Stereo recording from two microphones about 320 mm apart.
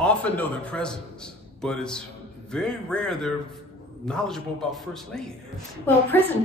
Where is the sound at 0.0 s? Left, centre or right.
Centre.